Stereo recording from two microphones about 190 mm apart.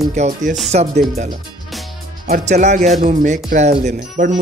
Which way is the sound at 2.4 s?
40° right (ahead or behind).